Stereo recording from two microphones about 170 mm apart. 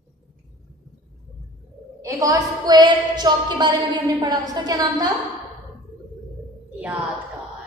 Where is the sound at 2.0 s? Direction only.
20° right (ahead or behind).